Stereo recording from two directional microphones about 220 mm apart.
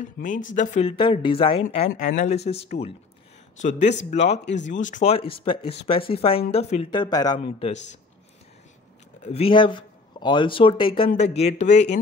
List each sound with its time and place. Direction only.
0.0 s a man's voice: 35° left (ahead or behind)
9.2 s a man's voice: 25° left (ahead or behind)